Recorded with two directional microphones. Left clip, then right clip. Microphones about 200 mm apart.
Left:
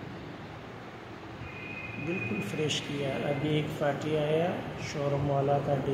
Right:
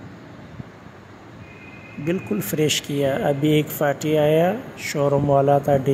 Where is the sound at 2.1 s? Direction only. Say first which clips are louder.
Right 11 dB; 40° right (ahead or behind).